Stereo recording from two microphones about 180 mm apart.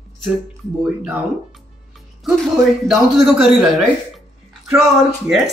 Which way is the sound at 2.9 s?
Centre (ahead or behind).